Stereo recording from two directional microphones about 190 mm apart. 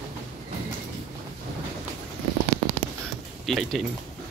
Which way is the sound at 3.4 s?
Centre (ahead or behind).